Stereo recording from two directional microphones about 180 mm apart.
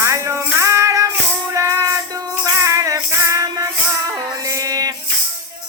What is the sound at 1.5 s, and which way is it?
Music, 15° right (ahead or behind).